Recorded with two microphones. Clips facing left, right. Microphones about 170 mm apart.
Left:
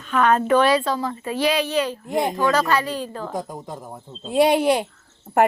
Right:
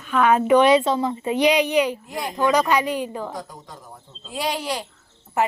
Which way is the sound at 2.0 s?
55° left (ahead or behind).